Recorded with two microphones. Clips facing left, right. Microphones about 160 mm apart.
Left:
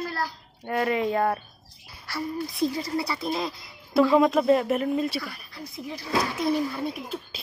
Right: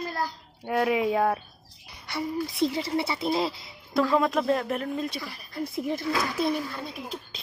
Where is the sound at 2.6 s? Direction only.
25° right (ahead or behind).